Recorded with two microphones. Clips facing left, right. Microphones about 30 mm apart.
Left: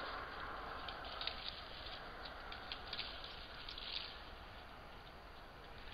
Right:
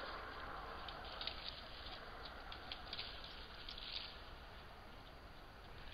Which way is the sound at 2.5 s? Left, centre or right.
Centre.